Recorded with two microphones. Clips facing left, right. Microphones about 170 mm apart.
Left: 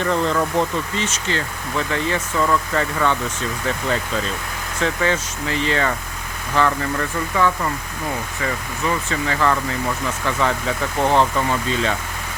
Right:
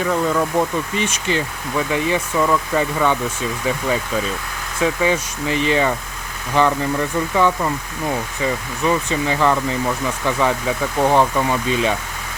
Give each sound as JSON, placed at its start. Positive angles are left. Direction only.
{"t": 0.0, "sound": "speech", "side_deg": -5}